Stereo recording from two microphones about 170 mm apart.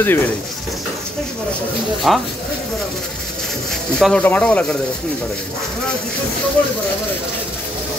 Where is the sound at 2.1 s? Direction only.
Centre (ahead or behind).